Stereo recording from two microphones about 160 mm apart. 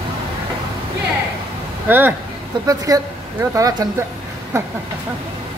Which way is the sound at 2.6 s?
20° right (ahead or behind).